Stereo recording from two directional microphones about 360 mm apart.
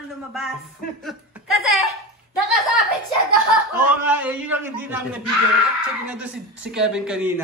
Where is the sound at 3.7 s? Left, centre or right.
Centre.